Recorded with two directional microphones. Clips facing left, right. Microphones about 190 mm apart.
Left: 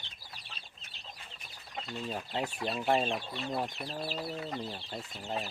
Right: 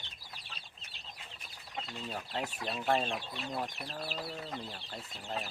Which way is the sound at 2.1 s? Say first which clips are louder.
Left 3 dB; 15° left (ahead or behind).